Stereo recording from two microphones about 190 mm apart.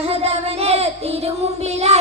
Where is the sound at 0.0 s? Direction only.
30° right (ahead or behind).